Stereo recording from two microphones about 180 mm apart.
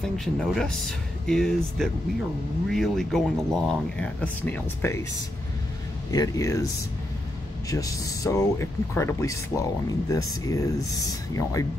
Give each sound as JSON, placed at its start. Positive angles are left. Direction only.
{"t": 0.0, "sound": "speech", "side_deg": 5}
{"t": 6.1, "sound": "speech", "side_deg": 20}
{"t": 7.7, "sound": "speech", "side_deg": 20}